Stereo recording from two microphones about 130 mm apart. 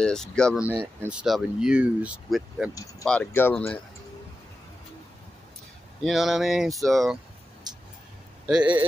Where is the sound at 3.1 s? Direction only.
15° left (ahead or behind).